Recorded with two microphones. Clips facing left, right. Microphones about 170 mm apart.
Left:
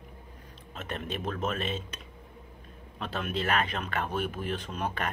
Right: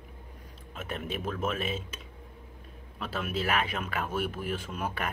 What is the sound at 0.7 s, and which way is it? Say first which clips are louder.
Speech: even; 5° right (ahead or behind).